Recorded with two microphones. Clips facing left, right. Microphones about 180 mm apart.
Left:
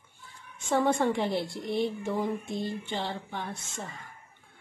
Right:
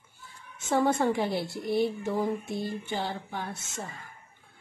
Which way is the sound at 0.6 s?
5° right (ahead or behind).